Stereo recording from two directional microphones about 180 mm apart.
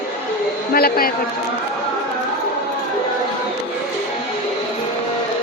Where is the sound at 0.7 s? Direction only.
55° left (ahead or behind).